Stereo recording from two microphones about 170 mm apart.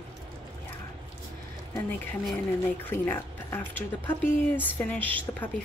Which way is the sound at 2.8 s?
10° left (ahead or behind).